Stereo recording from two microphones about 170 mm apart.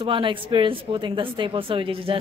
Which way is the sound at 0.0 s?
30° right (ahead or behind).